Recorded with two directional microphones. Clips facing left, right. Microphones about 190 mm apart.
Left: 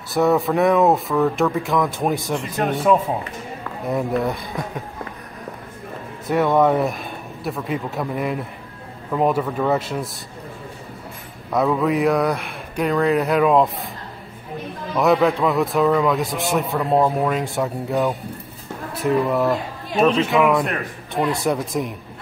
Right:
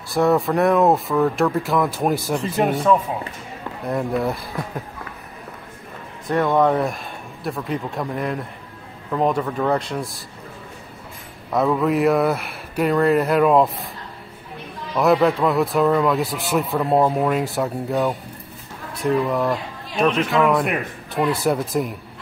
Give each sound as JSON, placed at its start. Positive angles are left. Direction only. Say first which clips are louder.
{"t": 0.1, "sound": "a man's voice", "louder": "even", "side_deg": 0}
{"t": 3.8, "sound": "a man's voice", "louder": "left 1 dB", "side_deg": 0}
{"t": 6.2, "sound": "a man's voice", "louder": "left 1 dB", "side_deg": 5}
{"t": 11.5, "sound": "a man's voice", "louder": "even", "side_deg": 0}
{"t": 15.0, "sound": "a man's voice", "louder": "even", "side_deg": 0}
{"t": 20.1, "sound": "speech", "louder": "even", "side_deg": 25}
{"t": 21.1, "sound": "a man's voice", "louder": "right 1 dB", "side_deg": 0}